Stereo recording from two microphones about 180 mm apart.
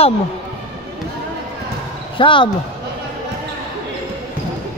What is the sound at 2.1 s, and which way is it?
Speech, 25° left (ahead or behind).